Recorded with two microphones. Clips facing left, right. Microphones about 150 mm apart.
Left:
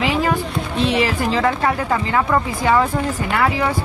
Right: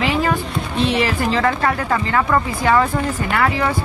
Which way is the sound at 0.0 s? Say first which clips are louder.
Even; 10° left (ahead or behind).